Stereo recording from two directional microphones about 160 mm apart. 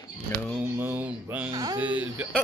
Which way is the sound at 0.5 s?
10° right (ahead or behind).